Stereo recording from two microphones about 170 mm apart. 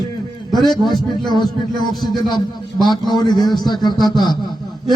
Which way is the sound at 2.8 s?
25° left (ahead or behind).